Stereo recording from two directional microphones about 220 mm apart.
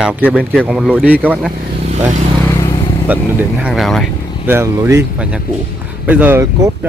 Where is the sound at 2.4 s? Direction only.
15° left (ahead or behind).